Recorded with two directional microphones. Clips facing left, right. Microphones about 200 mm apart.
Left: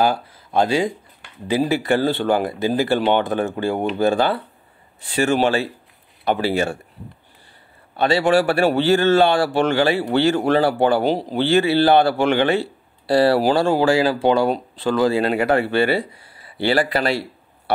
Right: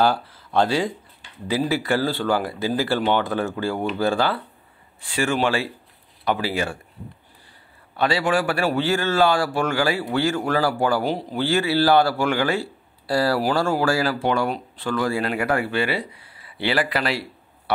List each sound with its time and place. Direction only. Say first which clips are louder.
0.0 s speech: left 1 dB; 15° left (ahead or behind)
6.2 s speech: left 4 dB; 25° left (ahead or behind)
7.9 s speech: left 5 dB; 25° left (ahead or behind)
16.4 s speech: left 4 dB; 40° left (ahead or behind)
16.8 s speech: left 4 dB; 30° left (ahead or behind)